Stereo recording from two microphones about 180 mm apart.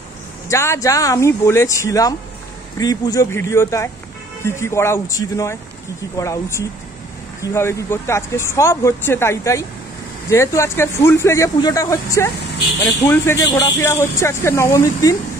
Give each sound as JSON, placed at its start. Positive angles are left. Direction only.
{"t": 0.5, "sound": "speech", "side_deg": 15}